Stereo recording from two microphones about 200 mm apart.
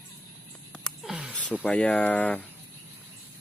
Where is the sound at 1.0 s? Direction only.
Centre (ahead or behind).